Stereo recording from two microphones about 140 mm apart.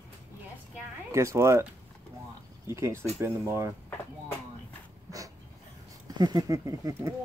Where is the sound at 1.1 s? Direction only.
20° right (ahead or behind).